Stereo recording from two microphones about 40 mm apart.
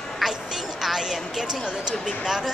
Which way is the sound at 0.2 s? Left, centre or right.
Centre.